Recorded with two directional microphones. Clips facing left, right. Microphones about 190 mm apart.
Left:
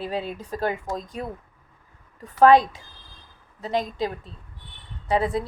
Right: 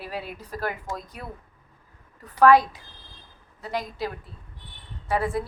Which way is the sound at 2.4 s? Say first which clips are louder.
Left 2 dB; 25° left (ahead or behind).